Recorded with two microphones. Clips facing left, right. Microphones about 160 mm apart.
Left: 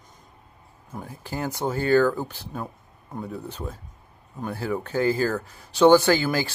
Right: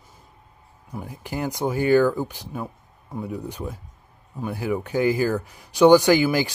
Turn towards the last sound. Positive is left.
turn(degrees=-15)  # may be behind; listen again after turning